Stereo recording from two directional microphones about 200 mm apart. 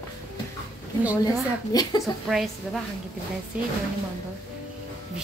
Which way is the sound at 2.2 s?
Centre (ahead or behind).